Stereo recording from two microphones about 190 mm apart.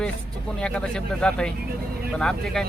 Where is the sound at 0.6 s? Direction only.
5° left (ahead or behind).